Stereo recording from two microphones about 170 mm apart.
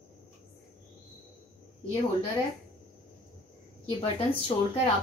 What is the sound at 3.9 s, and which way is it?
Speech, 35° left (ahead or behind).